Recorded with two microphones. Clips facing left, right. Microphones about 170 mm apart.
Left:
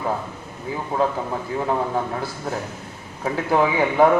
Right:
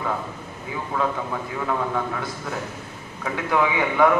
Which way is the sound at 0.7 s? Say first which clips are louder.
Left 3 dB; 35° left (ahead or behind).